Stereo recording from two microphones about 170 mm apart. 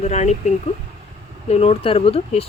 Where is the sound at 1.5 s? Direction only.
35° left (ahead or behind).